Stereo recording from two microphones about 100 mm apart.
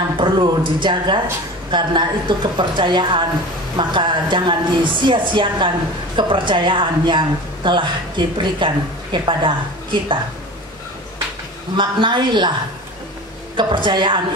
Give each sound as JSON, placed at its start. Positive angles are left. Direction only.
{"t": 0.2, "sound": "a woman's voice", "side_deg": -55}
{"t": 11.7, "sound": "a woman's voice", "side_deg": -50}
{"t": 13.6, "sound": "a woman's voice", "side_deg": -55}